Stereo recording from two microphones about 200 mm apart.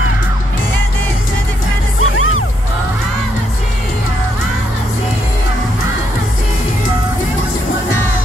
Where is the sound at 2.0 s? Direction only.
90° left.